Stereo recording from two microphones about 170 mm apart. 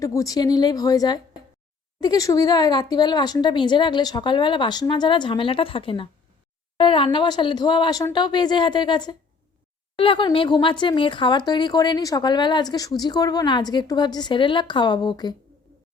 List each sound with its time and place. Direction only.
0.0 s speech: 20° left (ahead or behind)